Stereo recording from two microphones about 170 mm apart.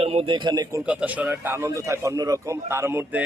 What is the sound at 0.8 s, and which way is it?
A man's voice, 10° right (ahead or behind).